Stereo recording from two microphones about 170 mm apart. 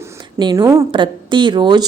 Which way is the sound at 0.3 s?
25° right (ahead or behind).